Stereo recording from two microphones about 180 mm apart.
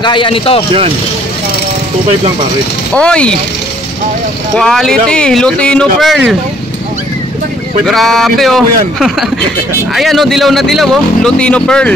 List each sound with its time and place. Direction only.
0.0 s speech: 25° left (ahead or behind)
2.9 s speech: 5° left (ahead or behind)
4.6 s speech: 5° left (ahead or behind)
7.8 s speech: centre (ahead or behind)